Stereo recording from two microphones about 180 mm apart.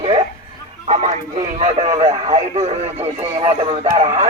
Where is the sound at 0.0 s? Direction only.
35° right (ahead or behind).